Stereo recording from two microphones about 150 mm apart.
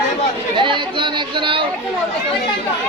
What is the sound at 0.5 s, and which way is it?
Speech, 35° right (ahead or behind).